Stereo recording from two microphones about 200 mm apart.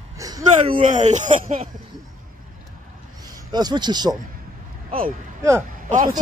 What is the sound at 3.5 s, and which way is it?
Speech, 20° right (ahead or behind).